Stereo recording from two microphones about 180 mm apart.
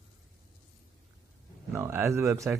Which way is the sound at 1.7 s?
15° right (ahead or behind).